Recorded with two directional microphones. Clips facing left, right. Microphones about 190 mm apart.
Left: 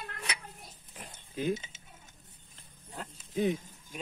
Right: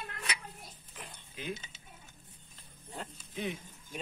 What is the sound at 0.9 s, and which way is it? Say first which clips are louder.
Pig: left 8 dB; 45° left (ahead or behind).